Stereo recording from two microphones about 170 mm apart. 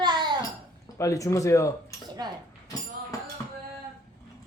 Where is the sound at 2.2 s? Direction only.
25° right (ahead or behind).